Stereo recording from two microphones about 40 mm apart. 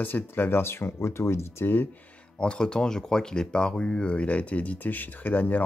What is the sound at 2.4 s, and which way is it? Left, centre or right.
Speech, left.